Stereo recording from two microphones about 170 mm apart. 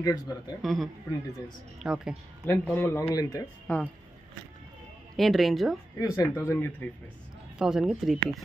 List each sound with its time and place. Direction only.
0.0 s speech: 25° left (ahead or behind)
0.6 s speech: centre (ahead or behind)
2.5 s speech: 10° left (ahead or behind)
3.6 s speech: 10° left (ahead or behind)
5.1 s speech: centre (ahead or behind)
5.9 s speech: 20° left (ahead or behind)
7.5 s speech: 5° right (ahead or behind)